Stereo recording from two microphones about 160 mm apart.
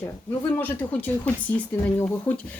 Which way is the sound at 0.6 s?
10° left (ahead or behind).